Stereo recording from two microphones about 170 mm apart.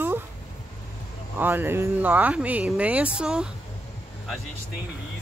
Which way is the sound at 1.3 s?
10° right (ahead or behind).